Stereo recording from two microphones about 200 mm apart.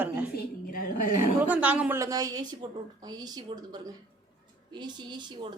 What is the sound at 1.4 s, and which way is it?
A woman's voice, 5° right (ahead or behind).